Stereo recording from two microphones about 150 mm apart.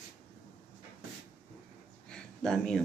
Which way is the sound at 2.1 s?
5° left (ahead or behind).